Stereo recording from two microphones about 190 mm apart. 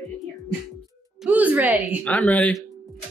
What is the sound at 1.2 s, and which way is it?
Speech, 5° right (ahead or behind).